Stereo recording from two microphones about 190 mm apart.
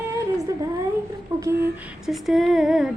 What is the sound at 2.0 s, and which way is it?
Female singing, centre (ahead or behind).